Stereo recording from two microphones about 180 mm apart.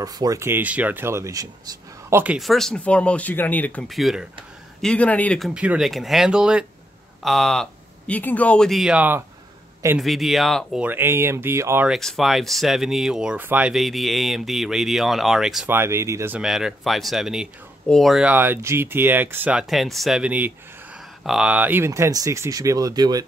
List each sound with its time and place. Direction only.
0.0 s speech: 20° right (ahead or behind); by 5.5 s 5° left (ahead or behind)
5.5 s speech: 5° right (ahead or behind)
11.9 s speech: centre (ahead or behind)
15.7 s speech: 15° right (ahead or behind)
16.3 s speech: 5° right (ahead or behind); by 23.2 s 20° right (ahead or behind)